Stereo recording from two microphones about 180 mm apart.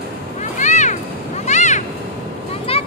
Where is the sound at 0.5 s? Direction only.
40° left (ahead or behind).